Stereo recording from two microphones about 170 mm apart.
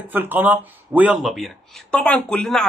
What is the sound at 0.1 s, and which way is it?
Speech, 10° right (ahead or behind).